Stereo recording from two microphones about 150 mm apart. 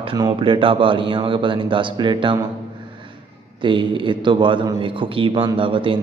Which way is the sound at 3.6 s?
35° right (ahead or behind).